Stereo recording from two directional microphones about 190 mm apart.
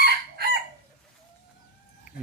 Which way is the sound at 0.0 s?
60° right (ahead or behind).